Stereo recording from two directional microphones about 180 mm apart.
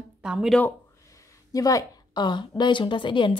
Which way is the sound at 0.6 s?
15° left (ahead or behind).